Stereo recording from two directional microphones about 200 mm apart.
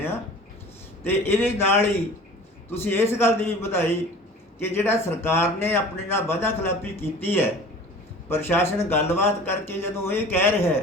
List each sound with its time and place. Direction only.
1.0 s a man's voice: 10° left (ahead or behind)